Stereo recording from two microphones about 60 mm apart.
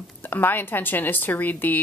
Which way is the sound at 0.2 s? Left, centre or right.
Left.